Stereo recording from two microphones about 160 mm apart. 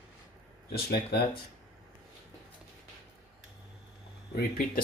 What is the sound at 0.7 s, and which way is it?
Speech, 80° left.